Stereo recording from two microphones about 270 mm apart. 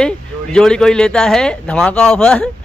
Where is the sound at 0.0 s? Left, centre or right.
Centre.